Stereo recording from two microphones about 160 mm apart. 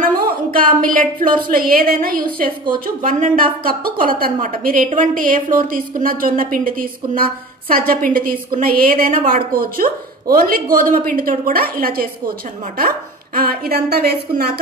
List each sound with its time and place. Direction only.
0.5 s a woman's voice: 60° right (ahead or behind); by 14.6 s 75° right (ahead or behind)